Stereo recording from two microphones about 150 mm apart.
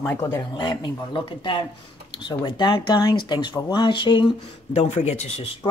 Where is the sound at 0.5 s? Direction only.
30° left (ahead or behind).